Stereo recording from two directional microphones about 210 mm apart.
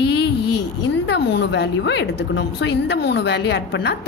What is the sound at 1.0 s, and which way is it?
A woman's voice, 55° left (ahead or behind).